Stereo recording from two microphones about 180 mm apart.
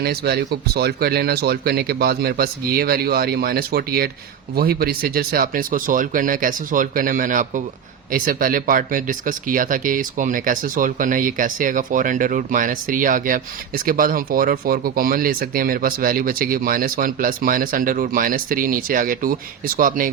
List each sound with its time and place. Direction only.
0.0 s speech: 60° right (ahead or behind)